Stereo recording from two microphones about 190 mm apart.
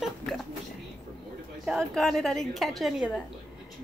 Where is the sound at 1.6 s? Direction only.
Centre (ahead or behind).